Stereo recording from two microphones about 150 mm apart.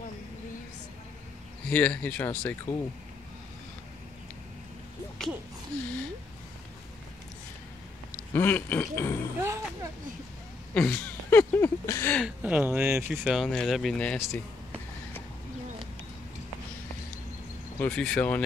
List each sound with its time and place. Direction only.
1.7 s speech: 10° left (ahead or behind)
8.3 s speech: 10° left (ahead or behind)
9.4 s speech: 15° right (ahead or behind)
10.7 s speech: 10° left (ahead or behind)
12.4 s speech: 10° right (ahead or behind)
17.7 s speech: 10° left (ahead or behind)